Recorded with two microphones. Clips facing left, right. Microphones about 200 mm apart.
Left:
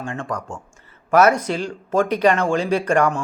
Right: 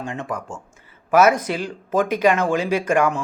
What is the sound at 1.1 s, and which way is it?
A man's voice, 10° right (ahead or behind).